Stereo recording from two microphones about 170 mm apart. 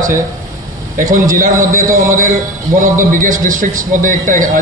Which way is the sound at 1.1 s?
50° right (ahead or behind).